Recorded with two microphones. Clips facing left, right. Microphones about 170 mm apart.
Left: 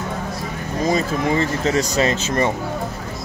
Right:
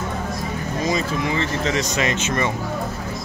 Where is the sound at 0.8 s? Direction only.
40° left (ahead or behind).